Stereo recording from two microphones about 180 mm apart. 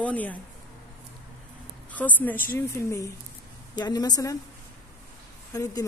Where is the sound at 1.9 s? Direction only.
10° left (ahead or behind).